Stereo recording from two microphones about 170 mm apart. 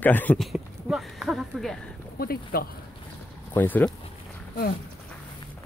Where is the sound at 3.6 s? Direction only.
10° left (ahead or behind).